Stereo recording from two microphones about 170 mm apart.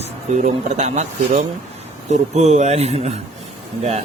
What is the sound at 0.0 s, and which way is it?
Speech, 45° right (ahead or behind).